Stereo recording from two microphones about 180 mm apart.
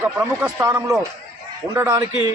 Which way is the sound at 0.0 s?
10° right (ahead or behind).